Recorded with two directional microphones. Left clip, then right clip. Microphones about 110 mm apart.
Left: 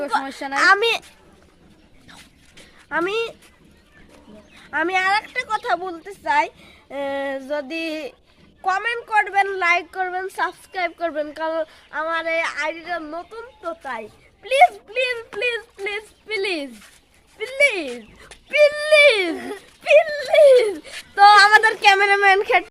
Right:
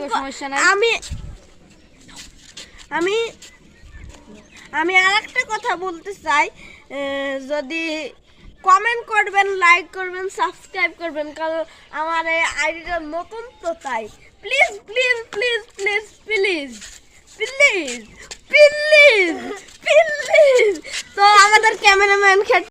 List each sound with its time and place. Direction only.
0.5 s speech: 20° left (ahead or behind)
2.9 s speech: 15° left (ahead or behind)
4.6 s speech: 15° left (ahead or behind)
14.4 s speech: 25° left (ahead or behind)
14.8 s speech: 10° left (ahead or behind)
18.6 s dog: 5° left (ahead or behind)
20.1 s speech: 15° left (ahead or behind)
20.7 s speech: 15° left (ahead or behind); by 22.6 s 5° right (ahead or behind)